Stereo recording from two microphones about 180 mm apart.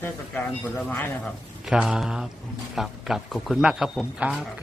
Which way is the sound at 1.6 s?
5° right (ahead or behind).